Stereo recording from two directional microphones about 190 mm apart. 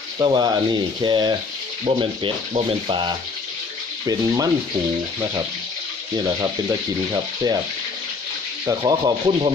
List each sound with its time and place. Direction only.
0.2 s speech: 20° right (ahead or behind)
6.1 s speech: 20° right (ahead or behind)
8.6 s speech: 20° right (ahead or behind)